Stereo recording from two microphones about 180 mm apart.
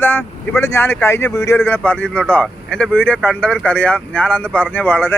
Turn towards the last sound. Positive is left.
turn(degrees=10)  # may be behind; listen again after turning